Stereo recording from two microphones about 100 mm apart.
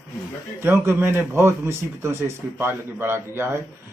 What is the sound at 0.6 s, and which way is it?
A man's voice, 25° right (ahead or behind).